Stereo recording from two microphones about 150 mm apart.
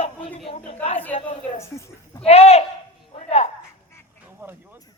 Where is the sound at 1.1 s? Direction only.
45° left (ahead or behind).